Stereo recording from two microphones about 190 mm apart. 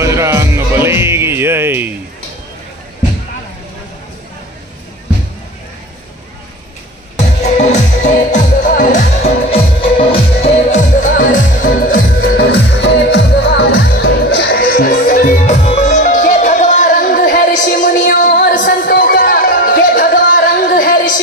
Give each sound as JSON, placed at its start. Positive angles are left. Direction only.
{"t": 0.0, "sound": "music", "side_deg": -15}
{"t": 7.4, "sound": "music", "side_deg": 35}